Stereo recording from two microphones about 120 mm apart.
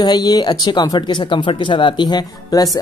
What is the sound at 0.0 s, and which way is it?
Speech, 35° left (ahead or behind).